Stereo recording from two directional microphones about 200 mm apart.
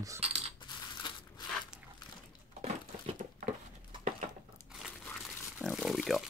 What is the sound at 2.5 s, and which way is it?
Crumpling, 30° right (ahead or behind).